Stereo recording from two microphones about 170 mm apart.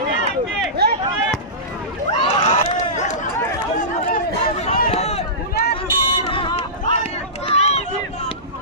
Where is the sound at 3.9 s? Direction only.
40° left (ahead or behind).